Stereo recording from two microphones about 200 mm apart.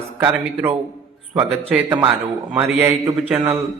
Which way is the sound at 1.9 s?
20° right (ahead or behind).